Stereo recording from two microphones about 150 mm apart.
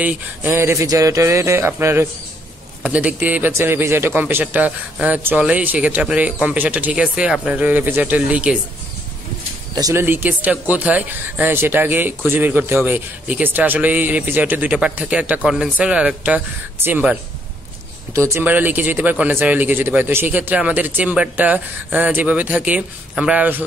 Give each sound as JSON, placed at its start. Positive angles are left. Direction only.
{"t": 0.0, "sound": "a man's voice", "side_deg": -10}
{"t": 9.8, "sound": "a man's voice", "side_deg": -20}